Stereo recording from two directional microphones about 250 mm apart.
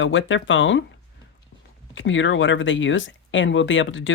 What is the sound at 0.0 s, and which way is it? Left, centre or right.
Speech, left.